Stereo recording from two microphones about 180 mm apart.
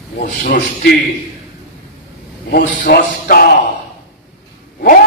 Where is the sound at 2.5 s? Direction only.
60° left (ahead or behind).